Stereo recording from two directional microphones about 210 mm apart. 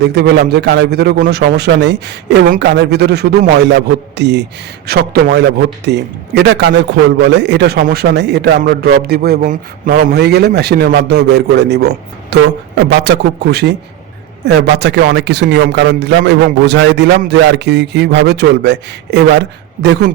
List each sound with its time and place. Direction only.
0.0 s a man's voice: 55° right (ahead or behind)